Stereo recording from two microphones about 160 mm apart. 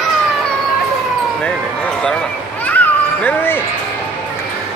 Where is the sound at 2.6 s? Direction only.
10° left (ahead or behind).